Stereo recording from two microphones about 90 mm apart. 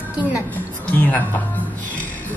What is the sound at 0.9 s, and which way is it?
Speech, 20° left (ahead or behind).